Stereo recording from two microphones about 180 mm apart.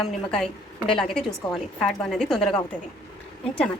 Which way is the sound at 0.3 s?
5° left (ahead or behind).